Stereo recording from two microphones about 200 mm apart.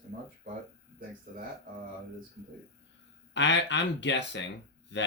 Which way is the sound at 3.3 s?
60° left (ahead or behind).